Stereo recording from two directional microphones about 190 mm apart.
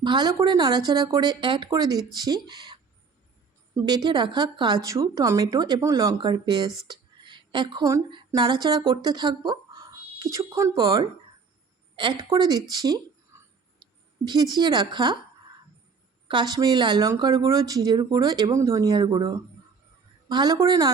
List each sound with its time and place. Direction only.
0.0 s speech: 25° right (ahead or behind)
3.8 s speech: 25° right (ahead or behind)
13.8 s a sound: 25° right (ahead or behind)
14.3 s speech: 20° right (ahead or behind)
16.3 s speech: 20° right (ahead or behind)